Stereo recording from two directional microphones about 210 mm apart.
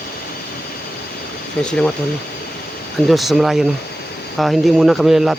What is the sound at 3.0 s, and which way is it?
Speech, centre (ahead or behind).